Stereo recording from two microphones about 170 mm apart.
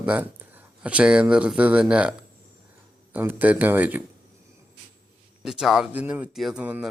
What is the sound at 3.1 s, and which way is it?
Speech, 10° right (ahead or behind).